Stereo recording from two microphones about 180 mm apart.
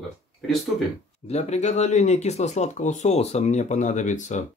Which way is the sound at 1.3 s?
40° left (ahead or behind).